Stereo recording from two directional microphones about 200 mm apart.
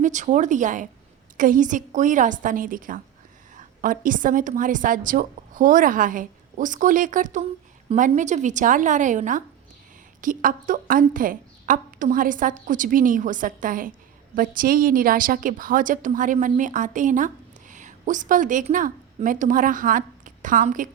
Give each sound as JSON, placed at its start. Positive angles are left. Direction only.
{"t": 0.0, "sound": "a woman's voice", "side_deg": -35}